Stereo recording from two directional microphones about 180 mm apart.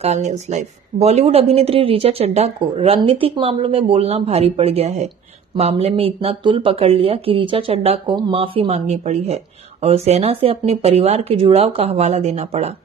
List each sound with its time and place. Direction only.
0.0 s speech: 40° right (ahead or behind)